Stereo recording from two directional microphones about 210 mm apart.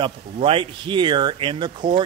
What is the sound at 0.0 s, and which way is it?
Speech, 25° right (ahead or behind).